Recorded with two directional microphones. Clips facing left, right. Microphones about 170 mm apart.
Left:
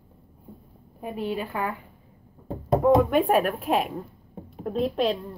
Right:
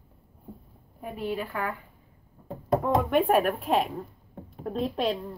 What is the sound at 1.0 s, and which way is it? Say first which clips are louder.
Speech: left 2 dB; 20° left (ahead or behind).